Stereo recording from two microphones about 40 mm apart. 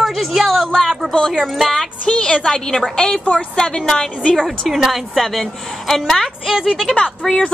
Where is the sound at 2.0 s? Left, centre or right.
Left.